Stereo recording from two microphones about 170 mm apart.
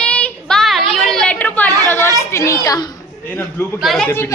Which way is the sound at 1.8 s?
15° left (ahead or behind).